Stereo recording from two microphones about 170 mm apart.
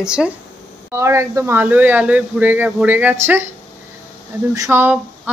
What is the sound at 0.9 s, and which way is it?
Speech, 15° right (ahead or behind).